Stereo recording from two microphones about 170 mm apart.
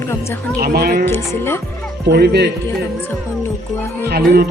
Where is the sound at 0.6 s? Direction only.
65° right (ahead or behind).